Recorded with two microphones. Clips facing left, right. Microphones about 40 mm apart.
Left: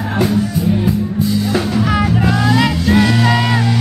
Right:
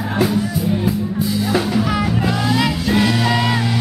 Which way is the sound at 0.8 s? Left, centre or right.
Centre.